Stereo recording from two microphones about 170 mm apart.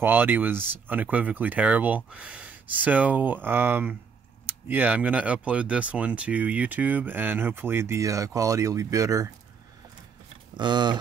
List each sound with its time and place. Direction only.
0.0 s speech: 10° right (ahead or behind)
10.5 s speech: 25° right (ahead or behind)